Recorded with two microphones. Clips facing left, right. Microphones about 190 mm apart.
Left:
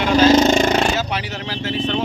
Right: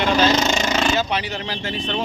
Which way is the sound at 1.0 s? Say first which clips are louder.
Right 1 dB; 5° left (ahead or behind).